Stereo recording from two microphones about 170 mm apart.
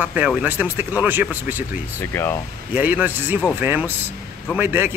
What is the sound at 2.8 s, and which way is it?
Speech, 10° right (ahead or behind).